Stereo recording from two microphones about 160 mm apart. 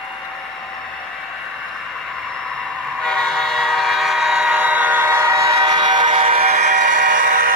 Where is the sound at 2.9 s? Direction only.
5° left (ahead or behind).